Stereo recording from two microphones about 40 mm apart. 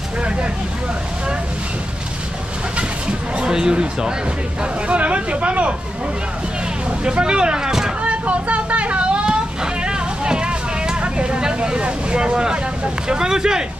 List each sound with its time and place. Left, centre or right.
3.1 s speech: right
4.8 s speech: right
7.1 s speech: right
8.0 s vehicle: right
11.0 s boat: right